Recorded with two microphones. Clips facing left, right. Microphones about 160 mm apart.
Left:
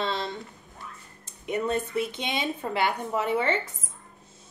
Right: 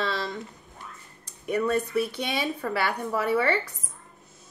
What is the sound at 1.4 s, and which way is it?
A woman's voice, 25° left (ahead or behind).